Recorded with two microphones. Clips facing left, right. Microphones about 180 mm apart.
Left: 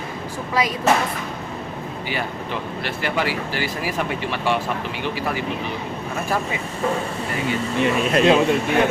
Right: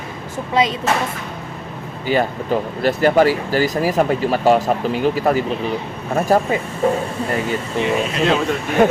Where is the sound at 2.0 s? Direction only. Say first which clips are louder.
Right 11 dB; 45° right (ahead or behind).